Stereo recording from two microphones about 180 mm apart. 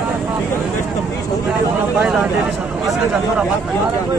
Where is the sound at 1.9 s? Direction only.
5° right (ahead or behind).